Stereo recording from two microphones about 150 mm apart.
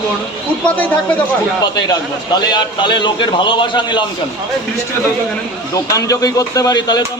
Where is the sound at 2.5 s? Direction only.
30° left (ahead or behind).